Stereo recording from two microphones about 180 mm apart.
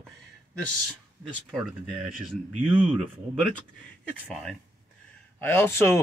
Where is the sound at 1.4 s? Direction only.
Centre (ahead or behind).